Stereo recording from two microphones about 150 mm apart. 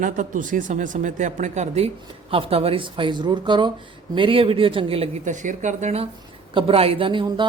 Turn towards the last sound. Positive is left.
turn(degrees=-35)  # may be behind; listen again after turning